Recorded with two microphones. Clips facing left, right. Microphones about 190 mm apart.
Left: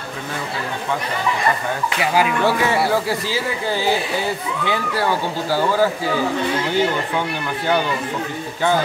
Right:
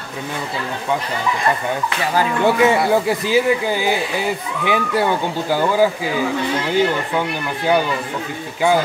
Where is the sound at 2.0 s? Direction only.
10° left (ahead or behind).